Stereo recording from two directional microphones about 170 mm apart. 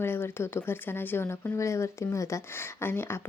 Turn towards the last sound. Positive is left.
turn(degrees=15)  # may be behind; listen again after turning